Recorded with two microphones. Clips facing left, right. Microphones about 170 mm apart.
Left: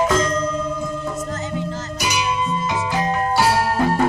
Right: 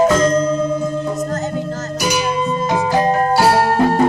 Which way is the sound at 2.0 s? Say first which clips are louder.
Right 4 dB; 45° right (ahead or behind).